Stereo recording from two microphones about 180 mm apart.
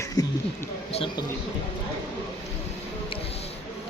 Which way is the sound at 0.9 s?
30° left (ahead or behind).